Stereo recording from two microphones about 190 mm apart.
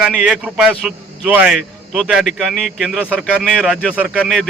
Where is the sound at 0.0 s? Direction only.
5° right (ahead or behind).